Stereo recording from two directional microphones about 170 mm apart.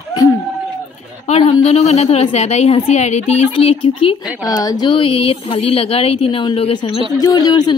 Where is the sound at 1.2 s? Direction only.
40° left (ahead or behind).